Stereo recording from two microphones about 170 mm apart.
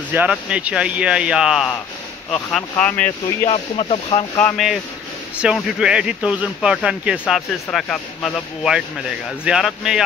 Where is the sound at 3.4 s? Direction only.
35° left (ahead or behind).